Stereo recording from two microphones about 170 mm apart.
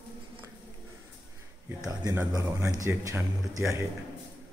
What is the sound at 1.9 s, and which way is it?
Speech, 20° right (ahead or behind).